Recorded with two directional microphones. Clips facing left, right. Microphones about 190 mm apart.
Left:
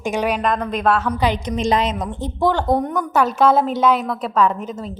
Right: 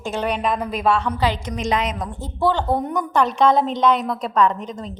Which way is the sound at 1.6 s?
30° left (ahead or behind).